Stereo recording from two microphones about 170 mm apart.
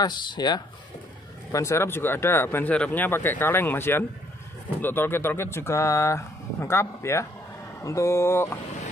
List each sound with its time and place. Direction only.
0.0 s speech: 25° left (ahead or behind)